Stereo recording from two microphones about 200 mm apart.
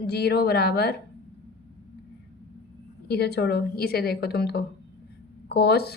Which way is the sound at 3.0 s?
55° left (ahead or behind).